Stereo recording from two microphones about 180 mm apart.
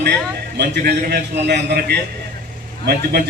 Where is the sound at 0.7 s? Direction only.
55° right (ahead or behind).